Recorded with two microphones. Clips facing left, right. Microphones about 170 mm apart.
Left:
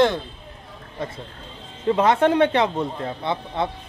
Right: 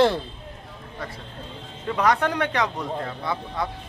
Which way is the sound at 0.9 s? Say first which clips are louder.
Left 5 dB; 25° left (ahead or behind).